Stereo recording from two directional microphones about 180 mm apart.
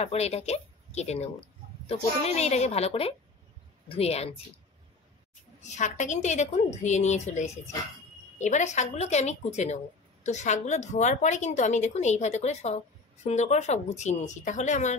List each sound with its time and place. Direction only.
0.0 s a woman's voice: 35° left (ahead or behind)
5.6 s a woman's voice: 40° left (ahead or behind)